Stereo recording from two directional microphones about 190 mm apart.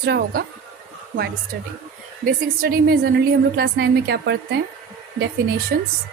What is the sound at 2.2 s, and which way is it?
A woman's voice, 50° right (ahead or behind).